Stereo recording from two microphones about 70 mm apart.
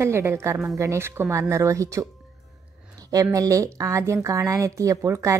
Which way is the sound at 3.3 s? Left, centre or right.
Right.